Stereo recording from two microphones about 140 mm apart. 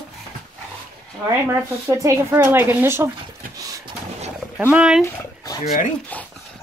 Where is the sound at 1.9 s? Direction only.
20° right (ahead or behind).